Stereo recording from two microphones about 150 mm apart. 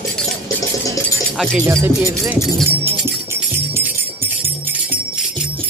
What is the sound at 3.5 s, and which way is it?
Music, 15° right (ahead or behind).